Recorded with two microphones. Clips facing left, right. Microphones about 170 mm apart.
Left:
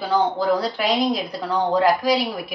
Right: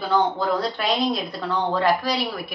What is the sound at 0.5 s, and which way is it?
A woman's voice, 10° left (ahead or behind).